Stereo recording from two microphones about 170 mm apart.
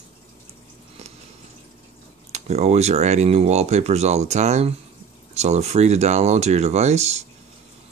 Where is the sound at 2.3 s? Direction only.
40° right (ahead or behind).